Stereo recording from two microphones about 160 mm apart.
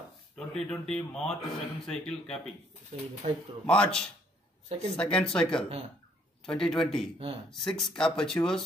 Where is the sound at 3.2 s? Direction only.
45° right (ahead or behind).